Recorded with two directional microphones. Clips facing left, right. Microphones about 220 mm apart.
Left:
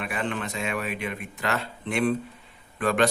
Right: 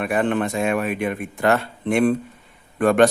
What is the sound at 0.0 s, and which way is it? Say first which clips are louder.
A man's voice: right 9 dB; 50° right (ahead or behind).